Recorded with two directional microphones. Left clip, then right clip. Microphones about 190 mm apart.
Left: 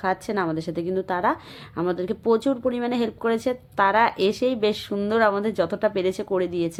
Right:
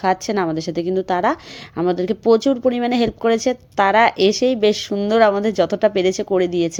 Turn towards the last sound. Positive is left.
turn(degrees=-25)  # may be behind; listen again after turning